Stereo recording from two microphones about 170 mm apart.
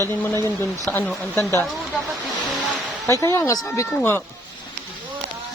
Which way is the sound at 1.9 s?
Centre (ahead or behind).